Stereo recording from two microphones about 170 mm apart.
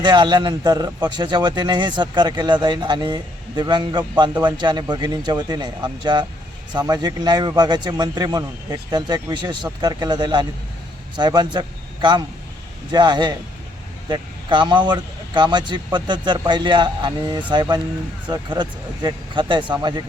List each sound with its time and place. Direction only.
0.0 s a man's voice: 25° right (ahead or behind)
12.9 s a man's voice: 25° right (ahead or behind)